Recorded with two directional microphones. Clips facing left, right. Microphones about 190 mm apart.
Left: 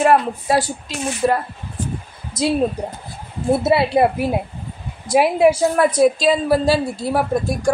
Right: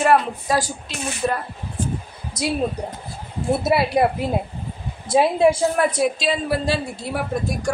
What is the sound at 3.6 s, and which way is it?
Speech, 25° left (ahead or behind).